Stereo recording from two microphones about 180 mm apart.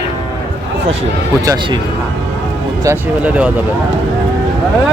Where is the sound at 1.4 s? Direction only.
20° right (ahead or behind).